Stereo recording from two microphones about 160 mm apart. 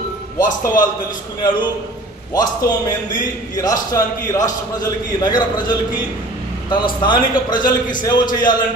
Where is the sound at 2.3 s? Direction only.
25° left (ahead or behind).